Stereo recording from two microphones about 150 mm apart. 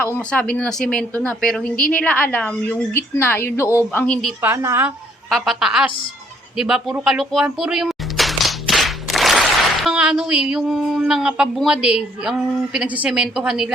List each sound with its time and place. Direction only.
0.0 s a woman's voice: 10° left (ahead or behind)
4.4 s a woman's voice: 15° right (ahead or behind)
5.3 s a woman's voice: centre (ahead or behind)